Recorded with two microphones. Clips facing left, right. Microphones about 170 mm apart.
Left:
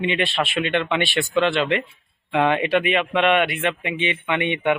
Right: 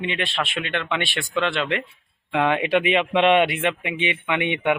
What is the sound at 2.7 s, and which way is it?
A man's voice, 20° right (ahead or behind).